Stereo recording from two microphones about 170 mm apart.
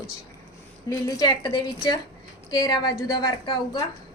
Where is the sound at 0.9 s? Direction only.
20° left (ahead or behind).